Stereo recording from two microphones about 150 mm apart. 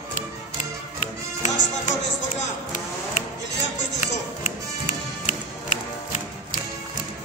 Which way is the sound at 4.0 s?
55° left (ahead or behind).